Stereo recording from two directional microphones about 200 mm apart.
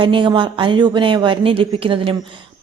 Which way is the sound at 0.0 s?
25° right (ahead or behind).